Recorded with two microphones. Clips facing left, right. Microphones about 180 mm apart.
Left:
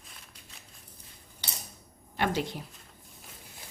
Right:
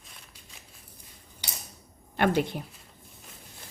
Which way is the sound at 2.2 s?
55° right (ahead or behind).